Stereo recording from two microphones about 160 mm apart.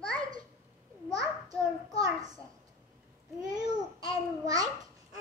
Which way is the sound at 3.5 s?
25° right (ahead or behind).